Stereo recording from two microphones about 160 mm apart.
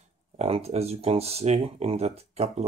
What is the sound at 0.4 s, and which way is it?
Speech, 40° right (ahead or behind).